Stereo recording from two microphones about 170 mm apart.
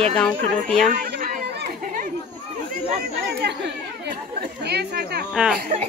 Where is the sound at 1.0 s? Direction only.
60° right (ahead or behind).